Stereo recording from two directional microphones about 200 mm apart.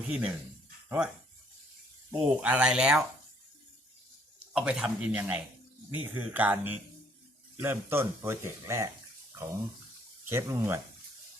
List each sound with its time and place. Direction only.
0.1 s speech: 5° right (ahead or behind)
2.2 s speech: 5° right (ahead or behind)
4.5 s speech: 5° right (ahead or behind)
10.2 s speech: 15° right (ahead or behind)